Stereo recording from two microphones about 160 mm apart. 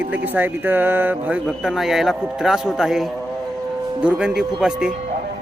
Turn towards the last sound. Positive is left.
turn(degrees=-5)  # may be behind; listen again after turning